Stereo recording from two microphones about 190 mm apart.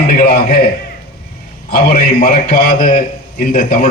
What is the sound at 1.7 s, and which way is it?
A man's voice, 45° left (ahead or behind).